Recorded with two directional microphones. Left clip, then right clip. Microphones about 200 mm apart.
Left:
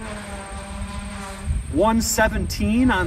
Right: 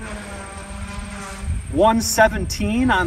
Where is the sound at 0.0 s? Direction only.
45° left (ahead or behind).